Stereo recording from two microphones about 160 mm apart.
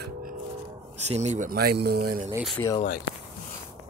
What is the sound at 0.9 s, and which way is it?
Speech, 45° right (ahead or behind).